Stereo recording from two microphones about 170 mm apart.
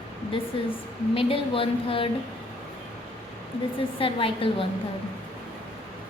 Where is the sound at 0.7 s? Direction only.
30° left (ahead or behind).